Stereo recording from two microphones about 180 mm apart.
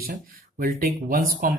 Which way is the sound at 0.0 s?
55° right (ahead or behind).